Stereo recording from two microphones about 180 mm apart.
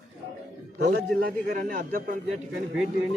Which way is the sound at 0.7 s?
65° right (ahead or behind).